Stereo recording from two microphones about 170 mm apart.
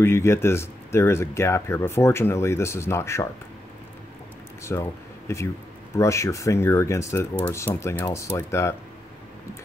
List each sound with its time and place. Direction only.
0.0 s speech: 15° left (ahead or behind)
4.7 s speech: 15° left (ahead or behind)